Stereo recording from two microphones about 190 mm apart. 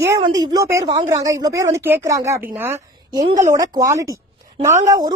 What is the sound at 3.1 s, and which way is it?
Speech, 20° right (ahead or behind).